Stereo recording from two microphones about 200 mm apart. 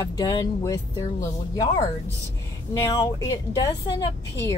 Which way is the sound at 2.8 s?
15° left (ahead or behind).